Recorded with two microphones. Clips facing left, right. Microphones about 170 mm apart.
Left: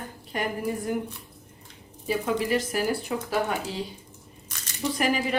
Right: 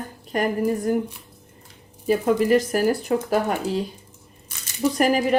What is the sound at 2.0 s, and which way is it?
Speech, 45° right (ahead or behind).